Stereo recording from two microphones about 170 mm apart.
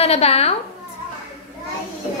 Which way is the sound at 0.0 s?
35° left (ahead or behind).